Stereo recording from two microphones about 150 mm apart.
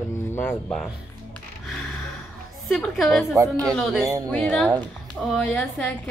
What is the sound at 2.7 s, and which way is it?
Speech, centre (ahead or behind).